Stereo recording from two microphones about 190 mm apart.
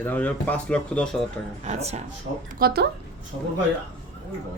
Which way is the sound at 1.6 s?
35° right (ahead or behind).